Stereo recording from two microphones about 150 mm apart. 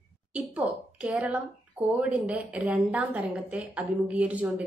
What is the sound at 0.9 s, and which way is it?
A woman's voice, 5° right (ahead or behind).